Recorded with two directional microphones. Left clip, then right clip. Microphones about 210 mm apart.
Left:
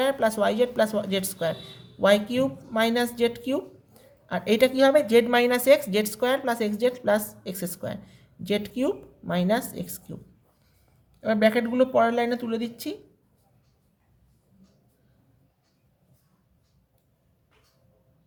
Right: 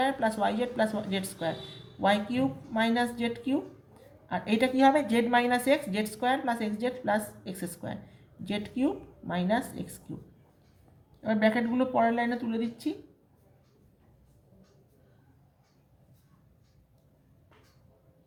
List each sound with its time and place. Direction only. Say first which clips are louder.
0.0 s a woman's voice: left 5 dB; 45° left (ahead or behind)
11.2 s a woman's voice: left 5 dB; 50° left (ahead or behind)